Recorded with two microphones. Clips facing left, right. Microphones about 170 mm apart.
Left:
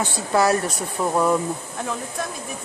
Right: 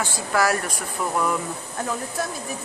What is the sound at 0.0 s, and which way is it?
Speech, 25° left (ahead or behind).